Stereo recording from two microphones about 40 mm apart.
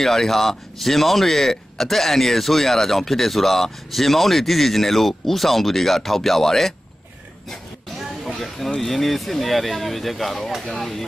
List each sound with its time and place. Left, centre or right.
0.0 s speech: centre
8.3 s speech: centre